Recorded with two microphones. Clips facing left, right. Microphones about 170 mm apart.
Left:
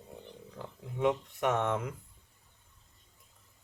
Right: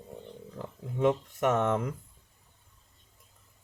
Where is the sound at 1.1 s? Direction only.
40° right (ahead or behind).